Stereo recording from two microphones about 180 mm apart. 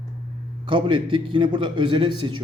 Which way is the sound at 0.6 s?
30° right (ahead or behind).